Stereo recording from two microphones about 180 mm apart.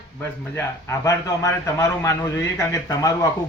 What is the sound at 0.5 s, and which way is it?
A man's voice, 15° left (ahead or behind).